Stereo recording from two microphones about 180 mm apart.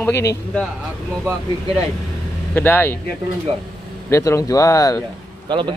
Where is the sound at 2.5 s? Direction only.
10° left (ahead or behind).